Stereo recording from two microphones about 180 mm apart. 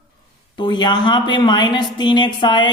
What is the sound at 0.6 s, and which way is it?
Speech, 25° left (ahead or behind).